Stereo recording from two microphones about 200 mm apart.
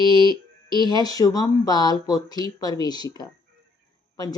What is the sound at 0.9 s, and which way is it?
A woman's voice, 20° left (ahead or behind).